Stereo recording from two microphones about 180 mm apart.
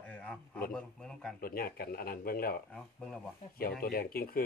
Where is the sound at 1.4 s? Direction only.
55° left (ahead or behind).